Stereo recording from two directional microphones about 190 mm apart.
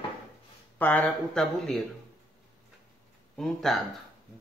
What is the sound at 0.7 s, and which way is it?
Speech, 10° left (ahead or behind).